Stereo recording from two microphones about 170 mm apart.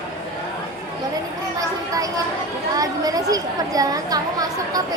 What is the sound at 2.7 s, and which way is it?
Speech, 20° right (ahead or behind).